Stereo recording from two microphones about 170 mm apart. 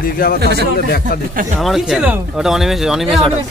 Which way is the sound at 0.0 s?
60° left (ahead or behind).